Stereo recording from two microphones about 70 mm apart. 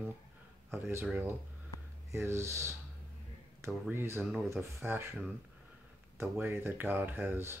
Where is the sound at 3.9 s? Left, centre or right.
Right.